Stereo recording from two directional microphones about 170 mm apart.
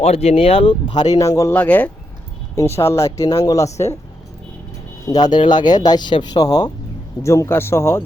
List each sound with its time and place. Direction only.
0.0 s speech: 40° left (ahead or behind)
1.0 s a man's voice: 20° left (ahead or behind)
5.0 s a man's voice: 25° left (ahead or behind)